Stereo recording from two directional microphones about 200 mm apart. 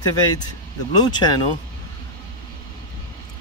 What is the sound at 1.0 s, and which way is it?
Speech, 20° left (ahead or behind).